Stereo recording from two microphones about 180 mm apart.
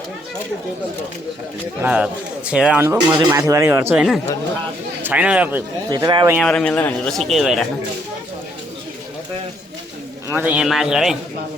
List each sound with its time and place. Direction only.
1.8 s speech: 10° right (ahead or behind)
5.9 s speech: 25° right (ahead or behind)
6.4 s speech: 5° left (ahead or behind)
10.2 s speech: 10° right (ahead or behind)